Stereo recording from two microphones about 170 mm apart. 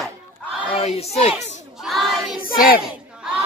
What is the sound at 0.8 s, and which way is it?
Speech, 35° left (ahead or behind).